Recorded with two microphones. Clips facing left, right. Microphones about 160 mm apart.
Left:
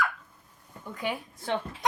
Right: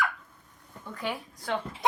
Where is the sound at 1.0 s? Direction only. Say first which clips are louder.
Left 1 dB; 15° left (ahead or behind).